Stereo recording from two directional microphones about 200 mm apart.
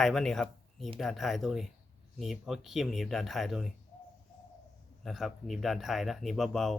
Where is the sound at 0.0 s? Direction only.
Centre (ahead or behind).